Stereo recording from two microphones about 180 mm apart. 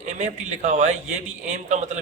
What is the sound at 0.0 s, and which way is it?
A man's voice, 40° right (ahead or behind).